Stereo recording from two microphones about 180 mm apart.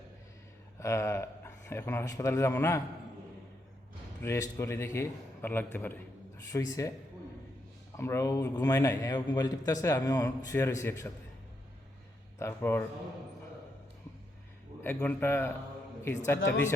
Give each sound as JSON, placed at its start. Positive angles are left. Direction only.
{"t": 0.8, "sound": "a man's voice", "side_deg": 15}
{"t": 4.2, "sound": "a man's voice", "side_deg": 15}
{"t": 7.9, "sound": "a man's voice", "side_deg": 15}
{"t": 12.4, "sound": "a man's voice", "side_deg": 10}
{"t": 14.8, "sound": "a man's voice", "side_deg": 10}